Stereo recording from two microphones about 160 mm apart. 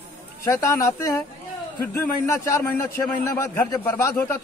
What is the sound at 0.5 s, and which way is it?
A man's voice, 20° left (ahead or behind).